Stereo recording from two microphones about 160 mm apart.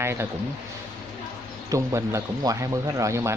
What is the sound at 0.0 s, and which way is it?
Speech, 15° right (ahead or behind).